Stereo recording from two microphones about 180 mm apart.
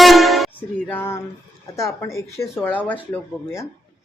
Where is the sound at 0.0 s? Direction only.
Centre (ahead or behind).